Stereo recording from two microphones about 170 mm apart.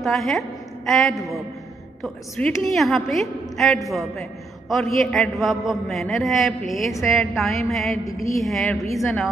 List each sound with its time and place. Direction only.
0.0 s a woman's voice: centre (ahead or behind)
8.0 s a woman's voice: 20° left (ahead or behind)
8.4 s a woman's voice: centre (ahead or behind)